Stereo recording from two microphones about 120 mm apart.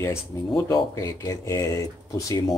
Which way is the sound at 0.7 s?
30° left (ahead or behind).